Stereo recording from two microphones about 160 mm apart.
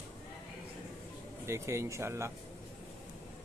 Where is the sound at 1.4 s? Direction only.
15° right (ahead or behind).